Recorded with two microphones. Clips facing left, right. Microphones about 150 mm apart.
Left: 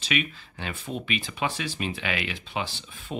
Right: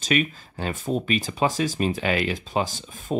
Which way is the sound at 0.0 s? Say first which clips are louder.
Right 6 dB; 40° right (ahead or behind).